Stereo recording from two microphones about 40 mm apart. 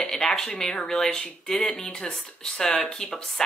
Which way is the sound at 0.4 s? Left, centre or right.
Centre.